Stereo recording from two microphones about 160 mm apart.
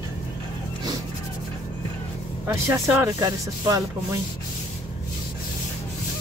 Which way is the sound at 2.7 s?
15° right (ahead or behind).